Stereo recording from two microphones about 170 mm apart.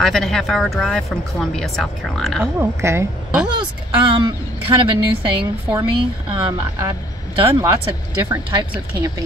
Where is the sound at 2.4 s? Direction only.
15° right (ahead or behind).